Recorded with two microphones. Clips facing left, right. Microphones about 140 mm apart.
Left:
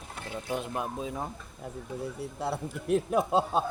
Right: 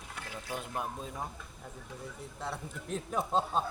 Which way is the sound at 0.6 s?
5° left (ahead or behind).